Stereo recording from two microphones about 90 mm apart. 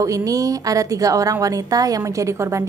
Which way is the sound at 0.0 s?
40° right (ahead or behind).